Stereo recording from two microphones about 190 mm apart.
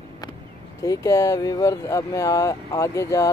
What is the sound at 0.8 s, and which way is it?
Speech, 15° left (ahead or behind).